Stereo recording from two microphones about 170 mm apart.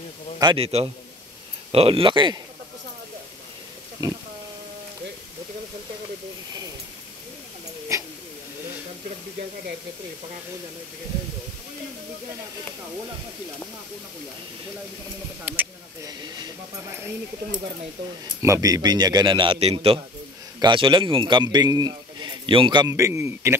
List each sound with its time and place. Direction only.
0.4 s a man's voice: 25° right (ahead or behind)
1.7 s speech: 35° right (ahead or behind)
4.0 s a man's voice: 20° right (ahead or behind)
15.4 s a man's voice: 10° right (ahead or behind)
16.1 s a man's voice: 25° right (ahead or behind)
18.4 s a man's voice: 20° right (ahead or behind)
22.9 s a man's voice: 15° right (ahead or behind)